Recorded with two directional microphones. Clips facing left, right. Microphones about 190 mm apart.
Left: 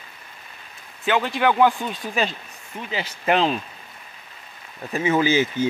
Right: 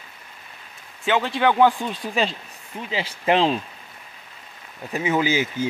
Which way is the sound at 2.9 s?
30° right (ahead or behind).